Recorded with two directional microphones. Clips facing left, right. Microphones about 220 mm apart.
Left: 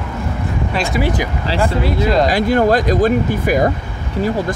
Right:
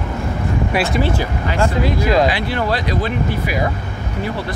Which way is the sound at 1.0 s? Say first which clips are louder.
Left 1 dB; 15° left (ahead or behind).